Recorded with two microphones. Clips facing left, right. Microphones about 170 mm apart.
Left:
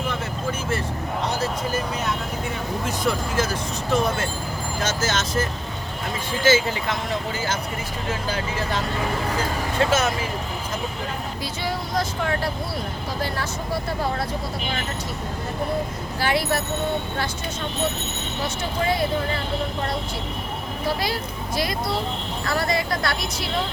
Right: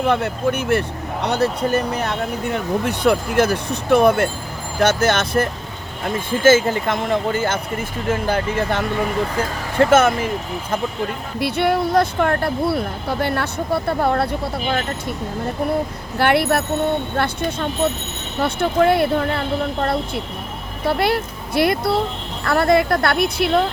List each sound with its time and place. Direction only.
0.1 s speech: 65° right (ahead or behind)
11.3 s speech: 65° right (ahead or behind)
16.1 s speech: 60° right (ahead or behind)